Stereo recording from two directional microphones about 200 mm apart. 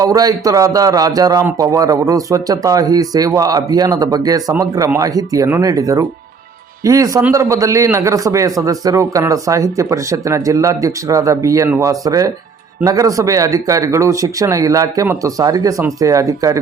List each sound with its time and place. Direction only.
0.0 s a man's voice: 20° right (ahead or behind)